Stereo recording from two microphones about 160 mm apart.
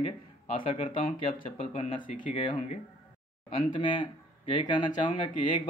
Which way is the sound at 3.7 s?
30° left (ahead or behind).